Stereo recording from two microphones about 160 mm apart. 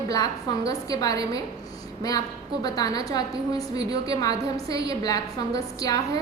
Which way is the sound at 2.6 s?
25° left (ahead or behind).